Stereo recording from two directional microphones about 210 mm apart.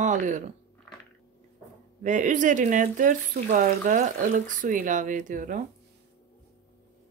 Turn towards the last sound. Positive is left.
turn(degrees=-40)  # may be behind; listen again after turning